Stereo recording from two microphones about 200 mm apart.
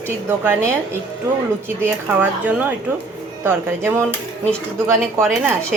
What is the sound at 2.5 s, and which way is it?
A woman's voice, 10° right (ahead or behind).